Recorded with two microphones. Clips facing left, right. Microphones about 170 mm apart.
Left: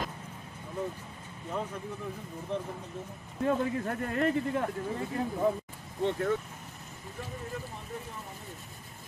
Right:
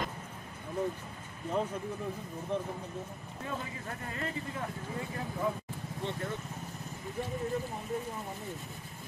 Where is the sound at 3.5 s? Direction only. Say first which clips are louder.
Left 11 dB; 55° left (ahead or behind).